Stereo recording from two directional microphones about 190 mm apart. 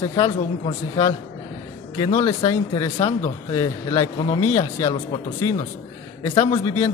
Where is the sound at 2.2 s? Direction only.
25° left (ahead or behind).